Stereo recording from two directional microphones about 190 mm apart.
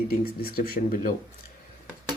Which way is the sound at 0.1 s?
50° left (ahead or behind).